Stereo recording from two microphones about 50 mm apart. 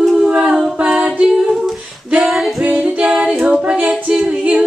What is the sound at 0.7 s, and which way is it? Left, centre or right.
A capella, centre.